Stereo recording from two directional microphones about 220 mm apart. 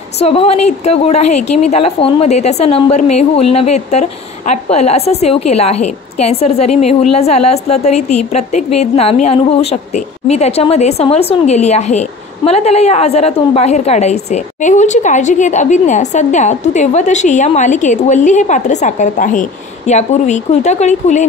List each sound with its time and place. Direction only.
0.2 s a woman's voice: 25° left (ahead or behind)